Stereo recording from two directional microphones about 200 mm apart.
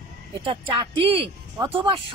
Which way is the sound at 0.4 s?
25° right (ahead or behind).